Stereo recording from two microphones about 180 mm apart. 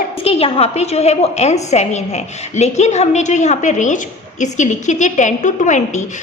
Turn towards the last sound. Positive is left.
turn(degrees=45)  # may be behind; listen again after turning